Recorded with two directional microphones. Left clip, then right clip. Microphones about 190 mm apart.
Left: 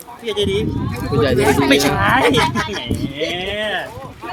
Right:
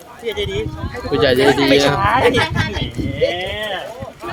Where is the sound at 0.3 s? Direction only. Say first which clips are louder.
Left 3 dB; 55° left (ahead or behind).